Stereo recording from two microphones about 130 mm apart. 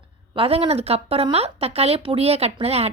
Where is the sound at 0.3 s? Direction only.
45° right (ahead or behind).